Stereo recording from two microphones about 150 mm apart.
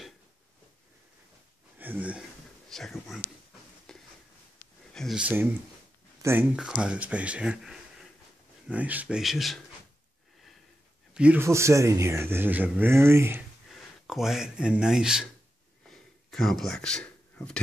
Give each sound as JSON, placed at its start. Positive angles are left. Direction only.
{"t": 1.8, "sound": "speech", "side_deg": -10}
{"t": 2.7, "sound": "speech", "side_deg": 0}
{"t": 3.9, "sound": "a sound", "side_deg": 5}
{"t": 6.2, "sound": "speech", "side_deg": -10}
{"t": 11.1, "sound": "speech", "side_deg": -10}
{"t": 11.4, "sound": "speech", "side_deg": -20}
{"t": 13.7, "sound": "speech", "side_deg": 0}
{"t": 15.9, "sound": "a sound", "side_deg": 0}